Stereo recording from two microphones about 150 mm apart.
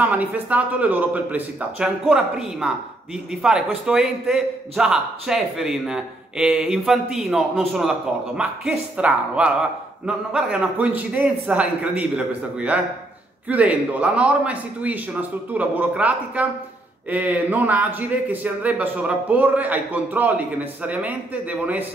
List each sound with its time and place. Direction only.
0.0 s a man's voice: 10° right (ahead or behind)